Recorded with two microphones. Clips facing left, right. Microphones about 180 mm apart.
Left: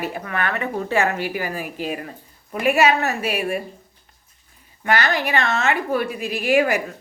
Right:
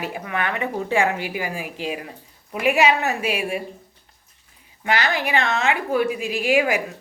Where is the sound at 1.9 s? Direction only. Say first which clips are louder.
Left 1 dB; 5° right (ahead or behind).